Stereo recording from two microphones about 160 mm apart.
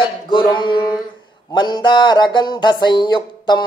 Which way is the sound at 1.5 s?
25° left (ahead or behind).